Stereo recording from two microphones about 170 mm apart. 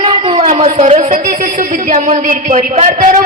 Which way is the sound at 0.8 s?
45° right (ahead or behind).